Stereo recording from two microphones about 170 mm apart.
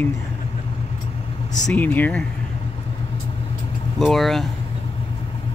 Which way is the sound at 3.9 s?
Centre (ahead or behind).